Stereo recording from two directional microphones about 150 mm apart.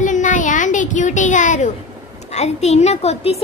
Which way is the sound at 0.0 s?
55° left (ahead or behind).